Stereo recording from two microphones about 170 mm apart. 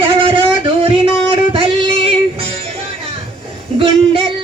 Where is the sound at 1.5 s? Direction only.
35° right (ahead or behind).